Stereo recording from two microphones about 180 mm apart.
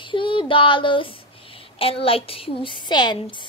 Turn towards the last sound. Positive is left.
turn(degrees=25)  # may be behind; listen again after turning